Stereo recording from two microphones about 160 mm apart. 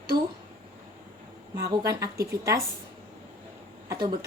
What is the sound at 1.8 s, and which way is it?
Speech, 20° right (ahead or behind).